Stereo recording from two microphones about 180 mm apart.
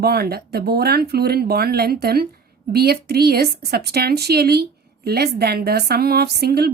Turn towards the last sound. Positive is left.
turn(degrees=-60)  # may be behind; listen again after turning